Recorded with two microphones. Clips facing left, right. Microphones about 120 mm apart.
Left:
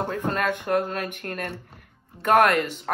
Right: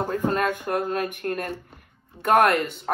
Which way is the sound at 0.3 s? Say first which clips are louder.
Even; 5° right (ahead or behind).